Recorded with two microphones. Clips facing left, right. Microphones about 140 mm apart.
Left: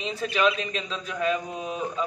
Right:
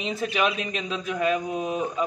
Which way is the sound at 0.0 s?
15° right (ahead or behind).